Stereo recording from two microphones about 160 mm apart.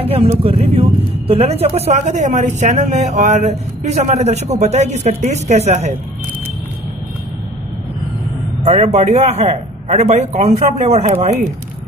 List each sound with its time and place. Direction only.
0.0 s speech: 35° right (ahead or behind)
8.6 s speech: 45° right (ahead or behind)